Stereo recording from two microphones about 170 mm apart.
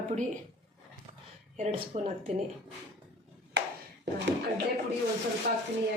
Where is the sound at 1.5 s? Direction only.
45° right (ahead or behind).